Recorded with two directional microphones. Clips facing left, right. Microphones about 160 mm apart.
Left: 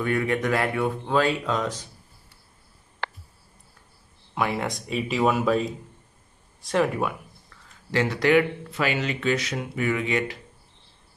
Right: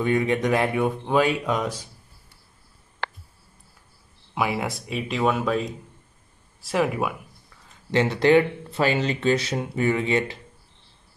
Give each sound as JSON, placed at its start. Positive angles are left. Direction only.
{"t": 0.0, "sound": "speech", "side_deg": -20}
{"t": 4.4, "sound": "speech", "side_deg": -5}
{"t": 7.9, "sound": "speech", "side_deg": -25}